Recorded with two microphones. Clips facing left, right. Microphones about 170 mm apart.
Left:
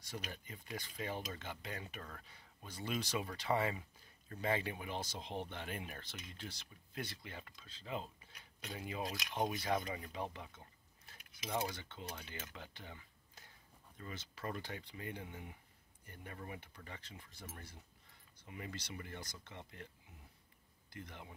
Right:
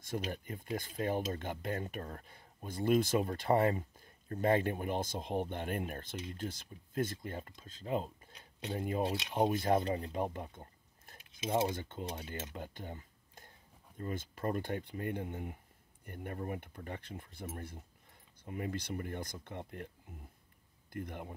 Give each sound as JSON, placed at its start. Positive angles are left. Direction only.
{"t": 0.3, "sound": "speech", "side_deg": -50}
{"t": 8.3, "sound": "a sound", "side_deg": -25}
{"t": 8.7, "sound": "speech", "side_deg": -45}
{"t": 9.0, "sound": "speech", "side_deg": -30}
{"t": 9.5, "sound": "speech", "side_deg": -55}
{"t": 10.1, "sound": "a sound", "side_deg": -50}
{"t": 11.3, "sound": "speech", "side_deg": -25}
{"t": 11.7, "sound": "speech", "side_deg": -50}
{"t": 12.5, "sound": "a sound", "side_deg": -50}
{"t": 13.9, "sound": "speech", "side_deg": -50}